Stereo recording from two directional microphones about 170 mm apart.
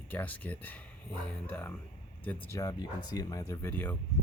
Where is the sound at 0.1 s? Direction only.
10° left (ahead or behind).